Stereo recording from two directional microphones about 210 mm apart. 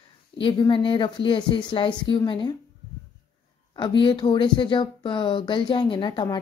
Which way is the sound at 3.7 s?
20° left (ahead or behind).